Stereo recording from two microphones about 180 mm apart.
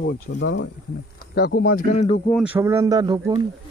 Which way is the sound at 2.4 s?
10° right (ahead or behind).